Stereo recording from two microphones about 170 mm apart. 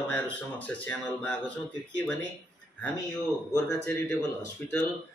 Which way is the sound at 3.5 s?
15° left (ahead or behind).